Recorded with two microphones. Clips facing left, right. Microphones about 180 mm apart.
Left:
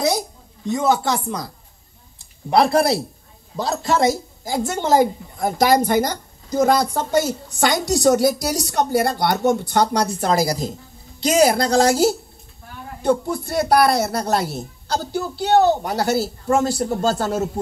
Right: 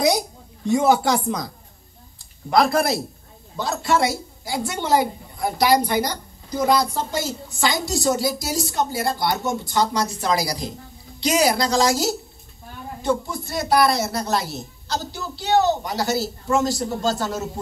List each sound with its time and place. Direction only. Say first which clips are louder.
2.5 s a woman's voice: left 2 dB; 30° left (ahead or behind); by 17.5 s 55° left (ahead or behind)